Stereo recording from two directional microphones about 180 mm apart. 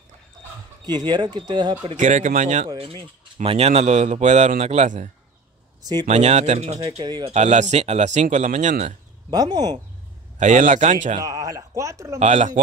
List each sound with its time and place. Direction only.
0.8 s speech: 25° right (ahead or behind)
2.0 s a man's voice: 45° right (ahead or behind)
5.8 s speech: 20° right (ahead or behind)
6.0 s a man's voice: 35° right (ahead or behind)
7.3 s a man's voice: 40° right (ahead or behind)
9.3 s speech: 20° right (ahead or behind)
10.4 s speech: 45° right (ahead or behind)
11.1 s speech: 20° right (ahead or behind)
12.2 s a man's voice: 40° right (ahead or behind)